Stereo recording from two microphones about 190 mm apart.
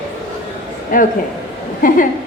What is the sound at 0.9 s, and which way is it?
A woman's voice, 45° left (ahead or behind).